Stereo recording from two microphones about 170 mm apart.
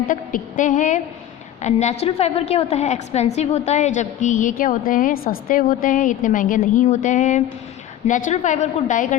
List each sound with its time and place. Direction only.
0.1 s a woman's voice: 50° left (ahead or behind)